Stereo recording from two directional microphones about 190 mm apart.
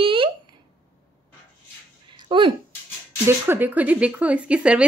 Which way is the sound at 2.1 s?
25° right (ahead or behind).